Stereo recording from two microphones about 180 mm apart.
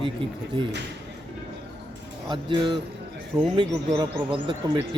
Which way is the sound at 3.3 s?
5° right (ahead or behind).